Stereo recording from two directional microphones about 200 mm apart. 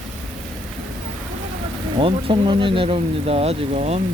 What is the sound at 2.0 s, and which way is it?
Speech, 25° right (ahead or behind).